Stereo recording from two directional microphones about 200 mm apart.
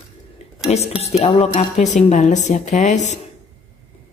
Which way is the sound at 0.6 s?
30° left (ahead or behind).